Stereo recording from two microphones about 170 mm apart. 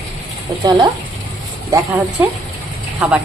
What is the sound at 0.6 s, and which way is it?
A woman's voice, 25° right (ahead or behind).